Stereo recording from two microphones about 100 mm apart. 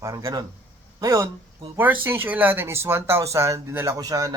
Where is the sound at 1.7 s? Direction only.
20° right (ahead or behind).